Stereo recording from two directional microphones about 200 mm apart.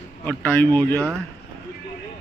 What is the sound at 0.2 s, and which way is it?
Speech, 10° left (ahead or behind).